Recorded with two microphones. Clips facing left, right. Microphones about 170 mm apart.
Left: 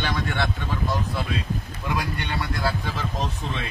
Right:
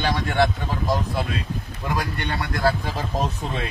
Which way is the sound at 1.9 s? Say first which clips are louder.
Right 1 dB; 45° right (ahead or behind).